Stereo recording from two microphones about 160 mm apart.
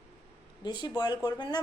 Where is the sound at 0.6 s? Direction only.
30° left (ahead or behind).